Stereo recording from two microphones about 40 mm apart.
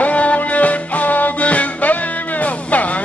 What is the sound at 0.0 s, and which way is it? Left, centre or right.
Music, left.